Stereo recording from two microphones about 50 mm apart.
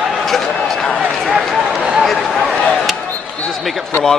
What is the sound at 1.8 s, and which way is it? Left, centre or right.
Speech, right.